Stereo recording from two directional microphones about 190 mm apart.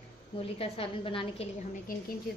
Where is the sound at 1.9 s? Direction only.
50° left (ahead or behind).